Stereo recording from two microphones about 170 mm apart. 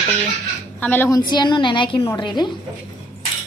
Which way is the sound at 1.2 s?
25° left (ahead or behind).